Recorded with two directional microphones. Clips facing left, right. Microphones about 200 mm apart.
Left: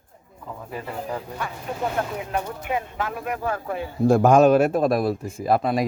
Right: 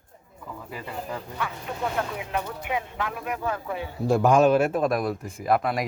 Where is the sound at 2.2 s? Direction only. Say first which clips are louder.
Left 2 dB; 45° left (ahead or behind).